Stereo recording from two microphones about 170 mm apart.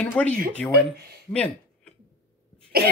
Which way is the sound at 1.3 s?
5° left (ahead or behind).